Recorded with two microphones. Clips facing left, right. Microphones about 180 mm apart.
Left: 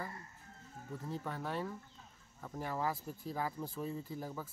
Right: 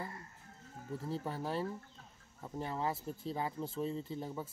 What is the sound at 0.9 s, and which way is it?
Speech, 30° right (ahead or behind).